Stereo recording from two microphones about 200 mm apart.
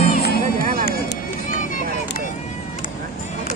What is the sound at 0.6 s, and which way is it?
Music, 45° right (ahead or behind).